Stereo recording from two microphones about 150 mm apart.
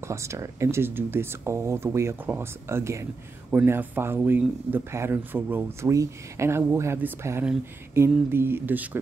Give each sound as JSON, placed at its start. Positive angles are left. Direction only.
{"t": 0.1, "sound": "speech", "side_deg": -20}